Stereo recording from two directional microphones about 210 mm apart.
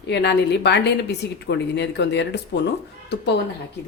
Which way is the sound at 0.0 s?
55° left (ahead or behind).